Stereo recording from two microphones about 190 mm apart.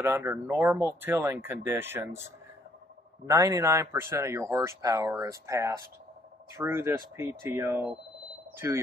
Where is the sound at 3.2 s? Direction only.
15° right (ahead or behind).